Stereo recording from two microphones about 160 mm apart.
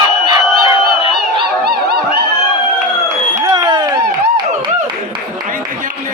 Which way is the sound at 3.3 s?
25° right (ahead or behind).